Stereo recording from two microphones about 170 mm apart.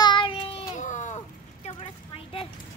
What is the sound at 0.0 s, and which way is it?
Child singing, 25° left (ahead or behind).